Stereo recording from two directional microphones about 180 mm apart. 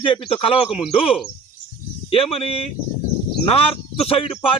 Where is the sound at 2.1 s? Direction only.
30° left (ahead or behind).